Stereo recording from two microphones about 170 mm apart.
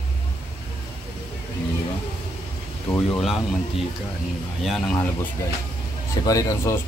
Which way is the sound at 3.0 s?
5° left (ahead or behind).